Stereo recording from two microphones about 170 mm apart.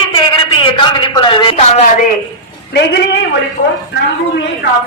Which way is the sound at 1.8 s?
50° left (ahead or behind).